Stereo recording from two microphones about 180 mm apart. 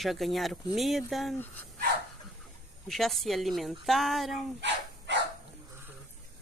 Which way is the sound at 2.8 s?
Centre (ahead or behind).